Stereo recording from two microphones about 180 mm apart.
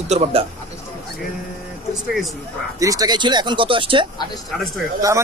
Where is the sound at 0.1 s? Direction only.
35° right (ahead or behind).